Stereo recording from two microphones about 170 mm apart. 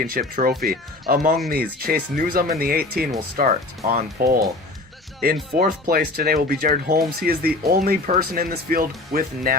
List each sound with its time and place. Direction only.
0.0 s speech: 55° right (ahead or behind)